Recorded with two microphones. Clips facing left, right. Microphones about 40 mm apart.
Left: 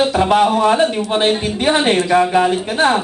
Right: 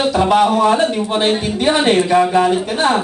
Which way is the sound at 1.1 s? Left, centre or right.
Centre.